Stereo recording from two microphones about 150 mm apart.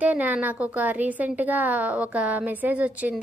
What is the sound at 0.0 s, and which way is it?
A woman's voice, 10° right (ahead or behind).